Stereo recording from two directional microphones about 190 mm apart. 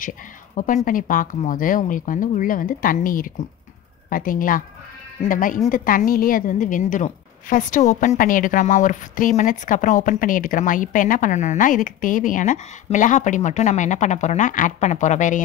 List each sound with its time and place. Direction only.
0.8 s a woman's voice: 45° left (ahead or behind)